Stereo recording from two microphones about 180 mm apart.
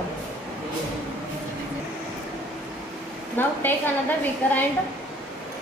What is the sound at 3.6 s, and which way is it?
A woman's voice, 10° left (ahead or behind).